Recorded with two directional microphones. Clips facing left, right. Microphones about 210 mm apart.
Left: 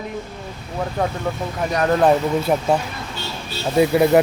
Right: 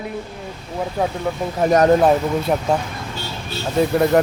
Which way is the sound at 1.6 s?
40° right (ahead or behind).